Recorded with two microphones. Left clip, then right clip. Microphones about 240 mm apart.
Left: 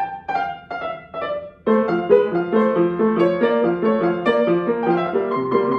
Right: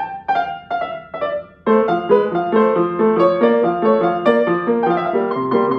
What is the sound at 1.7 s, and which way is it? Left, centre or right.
Music, centre.